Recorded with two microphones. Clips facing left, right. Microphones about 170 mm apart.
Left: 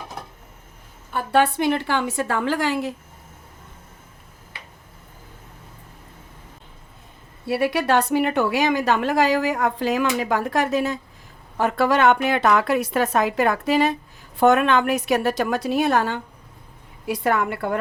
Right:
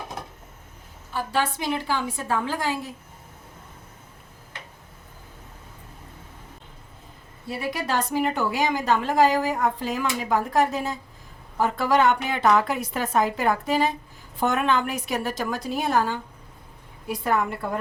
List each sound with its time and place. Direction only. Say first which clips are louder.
1.1 s a woman's voice: left 6 dB; 60° left (ahead or behind); by 2.9 s 75° left (ahead or behind)
7.4 s a woman's voice: left 8 dB; 70° left (ahead or behind)